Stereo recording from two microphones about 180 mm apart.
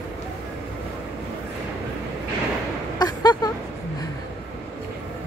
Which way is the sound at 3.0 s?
25° left (ahead or behind).